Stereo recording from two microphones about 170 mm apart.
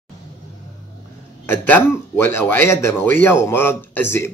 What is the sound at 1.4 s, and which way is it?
Speech, 10° left (ahead or behind).